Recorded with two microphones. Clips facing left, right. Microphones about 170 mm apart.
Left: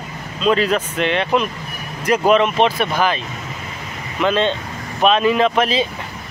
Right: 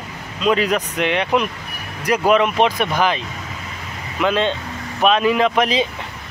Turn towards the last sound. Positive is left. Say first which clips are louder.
# left 1 dB
turn(degrees=-15)  # may be behind; listen again after turning